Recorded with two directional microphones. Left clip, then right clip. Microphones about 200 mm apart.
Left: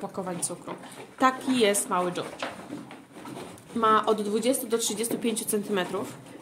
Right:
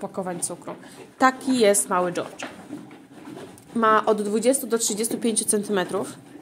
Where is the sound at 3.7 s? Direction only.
30° right (ahead or behind).